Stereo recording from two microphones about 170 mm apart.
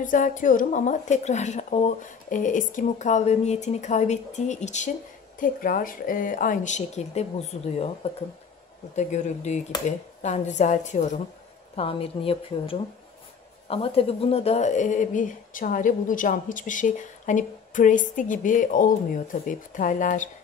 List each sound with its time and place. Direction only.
0.0 s speech: 50° left (ahead or behind)
5.4 s a woman's voice: 55° left (ahead or behind)